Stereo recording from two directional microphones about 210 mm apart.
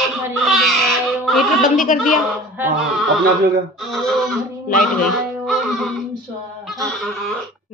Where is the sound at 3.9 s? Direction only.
Centre (ahead or behind).